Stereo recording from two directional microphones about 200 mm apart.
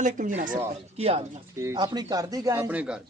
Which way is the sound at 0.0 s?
40° right (ahead or behind).